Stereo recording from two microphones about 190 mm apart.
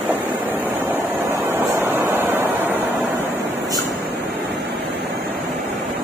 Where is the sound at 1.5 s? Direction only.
10° right (ahead or behind).